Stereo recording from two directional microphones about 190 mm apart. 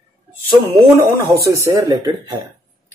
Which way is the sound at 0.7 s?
15° right (ahead or behind).